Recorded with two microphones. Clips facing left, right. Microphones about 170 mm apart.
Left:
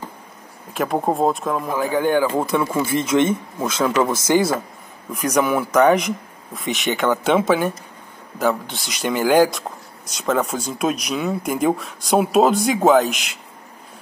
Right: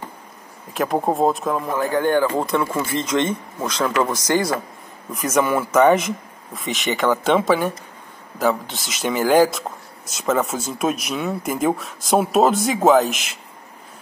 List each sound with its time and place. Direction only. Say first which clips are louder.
0.7 s speech: even; centre (ahead or behind)